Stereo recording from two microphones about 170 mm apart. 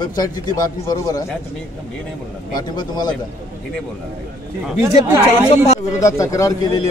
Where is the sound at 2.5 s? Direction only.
25° left (ahead or behind).